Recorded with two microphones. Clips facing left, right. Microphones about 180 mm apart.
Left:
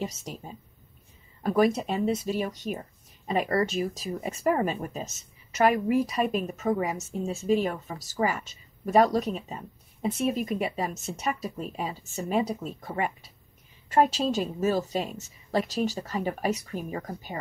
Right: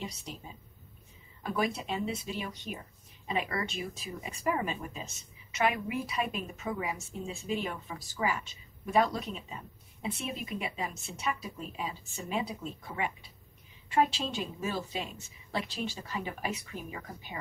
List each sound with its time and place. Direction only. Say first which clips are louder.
0.0 s speech: left 7 dB; 45° left (ahead or behind)
1.4 s a woman's voice: left 9 dB; 45° left (ahead or behind)